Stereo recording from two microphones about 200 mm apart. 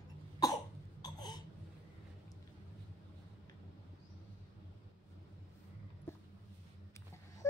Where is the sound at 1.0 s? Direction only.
20° left (ahead or behind).